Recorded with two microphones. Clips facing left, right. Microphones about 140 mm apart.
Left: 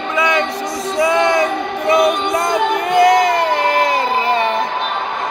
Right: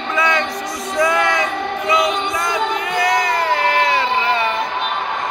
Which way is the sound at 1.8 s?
60° left (ahead or behind).